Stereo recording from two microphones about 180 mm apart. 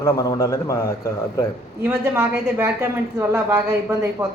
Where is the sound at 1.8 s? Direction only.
15° right (ahead or behind).